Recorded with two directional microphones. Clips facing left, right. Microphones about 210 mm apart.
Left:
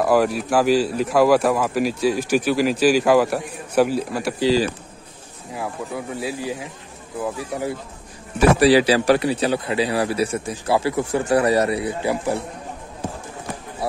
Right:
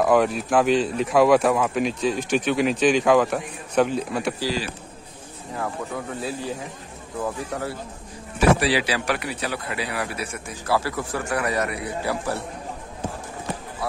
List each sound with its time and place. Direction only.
0.0 s speech: 5° left (ahead or behind)
5.5 s speech: 10° left (ahead or behind)
8.4 s a man's voice: 40° left (ahead or behind)
10.7 s a man's voice: 20° left (ahead or behind)